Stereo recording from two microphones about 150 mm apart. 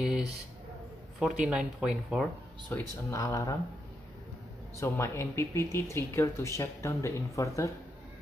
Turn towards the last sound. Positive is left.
turn(degrees=20)  # may be behind; listen again after turning